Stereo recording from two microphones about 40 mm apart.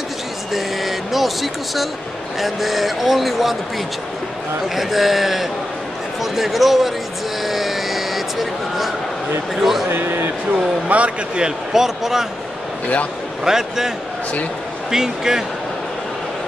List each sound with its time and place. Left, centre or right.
0.5 s speech: centre
4.7 s speech: centre
7.4 s a sound: centre
9.6 s speech: centre
9.8 s a sound: right
10.5 s speech: right
11.3 s speech: centre
13.4 s speech: centre